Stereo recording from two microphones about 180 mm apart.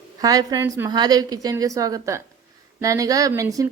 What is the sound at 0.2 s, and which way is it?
A woman's voice, 20° right (ahead or behind).